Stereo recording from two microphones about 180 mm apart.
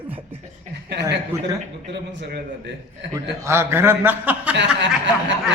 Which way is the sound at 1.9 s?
70° right (ahead or behind).